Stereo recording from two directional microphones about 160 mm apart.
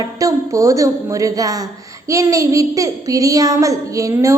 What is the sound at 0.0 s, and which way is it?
A child's voice, 20° right (ahead or behind).